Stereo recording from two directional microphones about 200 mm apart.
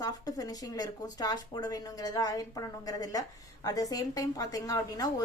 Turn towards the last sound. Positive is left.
turn(degrees=20)  # may be behind; listen again after turning